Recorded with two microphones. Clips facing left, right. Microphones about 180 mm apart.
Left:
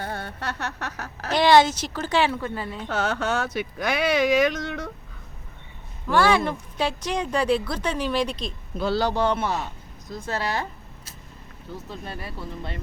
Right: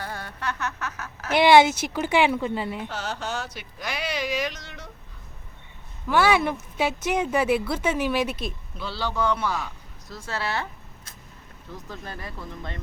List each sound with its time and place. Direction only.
0.0 s a sound: 30° left (ahead or behind)
1.4 s speech: 10° right (ahead or behind)
2.9 s speech: 55° left (ahead or behind)
6.1 s speech: 10° right (ahead or behind)
8.8 s speech: 45° left (ahead or behind)
9.2 s a woman's voice: 25° left (ahead or behind)
11.9 s speech: 30° left (ahead or behind)